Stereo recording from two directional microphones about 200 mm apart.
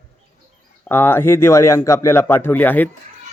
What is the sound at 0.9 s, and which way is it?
A man's voice, 10° left (ahead or behind).